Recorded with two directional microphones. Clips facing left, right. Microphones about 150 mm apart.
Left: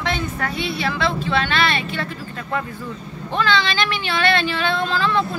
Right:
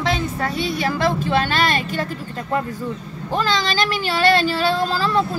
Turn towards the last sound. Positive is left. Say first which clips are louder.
# right 1 dB
turn(degrees=-40)  # may be behind; listen again after turning